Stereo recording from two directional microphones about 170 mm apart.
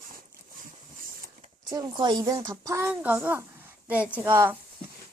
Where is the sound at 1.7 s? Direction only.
25° right (ahead or behind).